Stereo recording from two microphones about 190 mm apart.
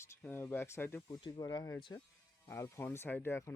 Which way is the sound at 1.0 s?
20° left (ahead or behind).